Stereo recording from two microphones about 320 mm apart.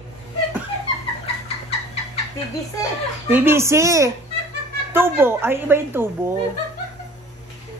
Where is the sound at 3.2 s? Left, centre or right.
Centre.